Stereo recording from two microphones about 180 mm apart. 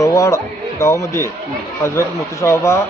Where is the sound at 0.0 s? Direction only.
15° left (ahead or behind).